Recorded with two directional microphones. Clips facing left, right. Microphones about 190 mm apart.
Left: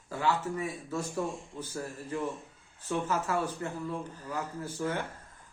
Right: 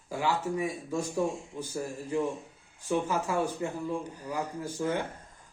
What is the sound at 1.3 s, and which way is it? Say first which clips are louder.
Speech: right 3 dB; centre (ahead or behind).